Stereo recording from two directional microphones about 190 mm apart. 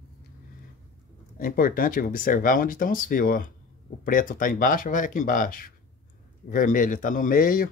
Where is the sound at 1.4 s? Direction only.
50° left (ahead or behind).